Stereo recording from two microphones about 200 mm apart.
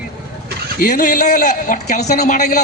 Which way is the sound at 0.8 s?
45° left (ahead or behind).